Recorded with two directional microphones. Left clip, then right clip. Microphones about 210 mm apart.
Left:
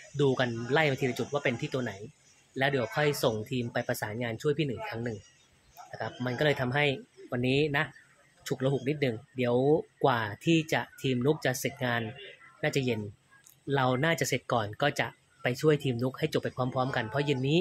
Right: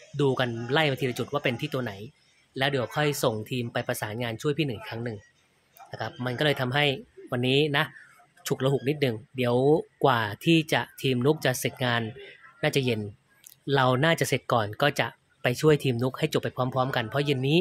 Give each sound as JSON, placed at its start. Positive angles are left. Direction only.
{"t": 0.2, "sound": "speech", "side_deg": -15}